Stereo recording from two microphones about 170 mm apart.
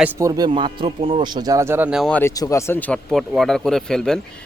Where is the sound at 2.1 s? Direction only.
10° left (ahead or behind).